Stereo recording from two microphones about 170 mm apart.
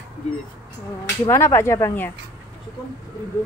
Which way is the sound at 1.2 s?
15° left (ahead or behind).